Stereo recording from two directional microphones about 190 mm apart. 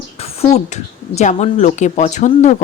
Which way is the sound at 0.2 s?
35° left (ahead or behind).